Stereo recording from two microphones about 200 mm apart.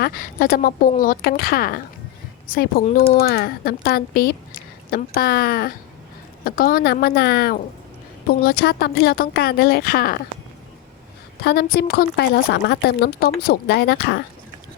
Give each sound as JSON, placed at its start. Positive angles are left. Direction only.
{"t": 0.0, "sound": "a woman's voice", "side_deg": 45}
{"t": 11.4, "sound": "a woman's voice", "side_deg": 50}